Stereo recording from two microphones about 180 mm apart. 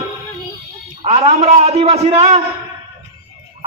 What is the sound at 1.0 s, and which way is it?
A man's voice, 35° right (ahead or behind).